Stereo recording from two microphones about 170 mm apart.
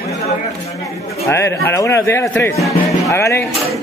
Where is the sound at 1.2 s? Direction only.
15° left (ahead or behind).